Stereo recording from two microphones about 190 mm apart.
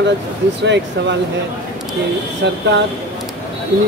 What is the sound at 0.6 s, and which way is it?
Speech, 65° right (ahead or behind).